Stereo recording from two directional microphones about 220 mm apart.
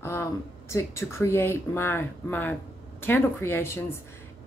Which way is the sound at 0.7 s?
15° left (ahead or behind).